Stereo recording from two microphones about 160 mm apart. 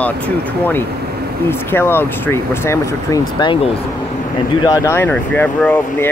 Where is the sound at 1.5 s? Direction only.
15° left (ahead or behind).